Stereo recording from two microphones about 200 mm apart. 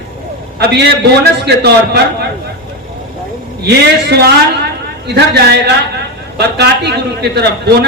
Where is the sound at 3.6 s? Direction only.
55° right (ahead or behind).